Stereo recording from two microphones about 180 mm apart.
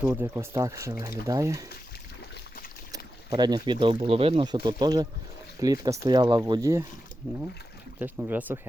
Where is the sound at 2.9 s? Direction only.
20° right (ahead or behind).